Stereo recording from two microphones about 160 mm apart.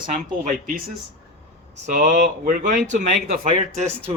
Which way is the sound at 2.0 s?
50° right (ahead or behind).